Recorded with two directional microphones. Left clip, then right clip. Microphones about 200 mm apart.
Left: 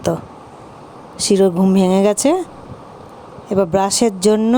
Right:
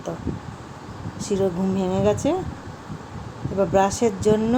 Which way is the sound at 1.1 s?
50° left (ahead or behind).